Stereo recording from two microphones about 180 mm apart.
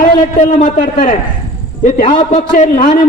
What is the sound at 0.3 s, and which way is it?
Speech, 45° left (ahead or behind).